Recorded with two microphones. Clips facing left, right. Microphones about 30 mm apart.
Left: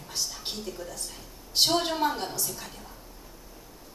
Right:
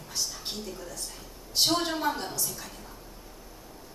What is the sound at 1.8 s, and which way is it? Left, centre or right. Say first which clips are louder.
Speech: left 2 dB; centre.